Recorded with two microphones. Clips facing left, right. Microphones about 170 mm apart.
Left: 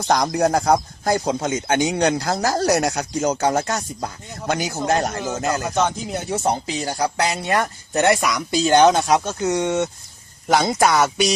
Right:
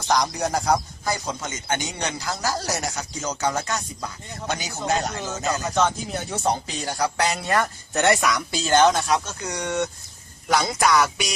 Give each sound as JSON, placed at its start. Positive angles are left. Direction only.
{"t": 0.1, "sound": "speech", "side_deg": 60}
{"t": 5.7, "sound": "speech", "side_deg": 15}
{"t": 6.3, "sound": "speech", "side_deg": 25}
{"t": 7.5, "sound": "speech", "side_deg": 10}
{"t": 9.4, "sound": "speech", "side_deg": 25}